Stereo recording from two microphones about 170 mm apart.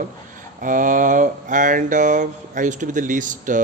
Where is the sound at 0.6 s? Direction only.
50° right (ahead or behind).